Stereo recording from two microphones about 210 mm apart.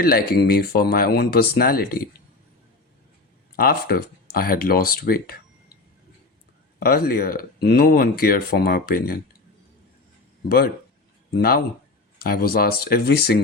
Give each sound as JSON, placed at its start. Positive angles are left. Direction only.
{"t": 0.0, "sound": "speech", "side_deg": 45}
{"t": 3.5, "sound": "speech", "side_deg": 45}
{"t": 6.7, "sound": "speech", "side_deg": 45}
{"t": 11.3, "sound": "speech", "side_deg": 45}